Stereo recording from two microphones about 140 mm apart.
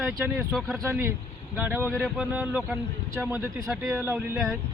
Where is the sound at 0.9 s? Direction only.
20° right (ahead or behind).